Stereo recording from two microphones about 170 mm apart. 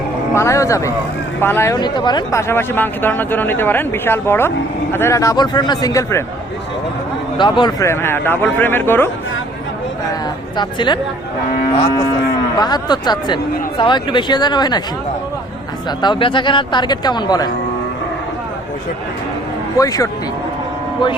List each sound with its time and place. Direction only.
0.3 s speech: 15° left (ahead or behind)
2.5 s speech: 10° left (ahead or behind)
7.3 s speech: 30° left (ahead or behind)
7.9 s speech: 15° left (ahead or behind)
10.6 s speech: 25° left (ahead or behind)
12.5 s speech: 25° left (ahead or behind)
16.0 s speech: 30° left (ahead or behind)
19.7 s speech: 20° left (ahead or behind)